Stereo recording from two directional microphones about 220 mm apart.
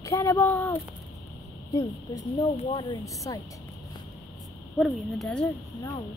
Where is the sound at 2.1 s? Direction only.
25° left (ahead or behind).